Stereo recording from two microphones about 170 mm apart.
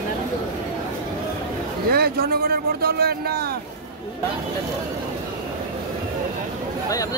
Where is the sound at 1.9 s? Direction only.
65° right (ahead or behind).